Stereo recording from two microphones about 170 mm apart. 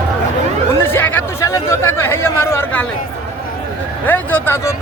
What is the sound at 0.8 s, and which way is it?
Chatter, 15° left (ahead or behind).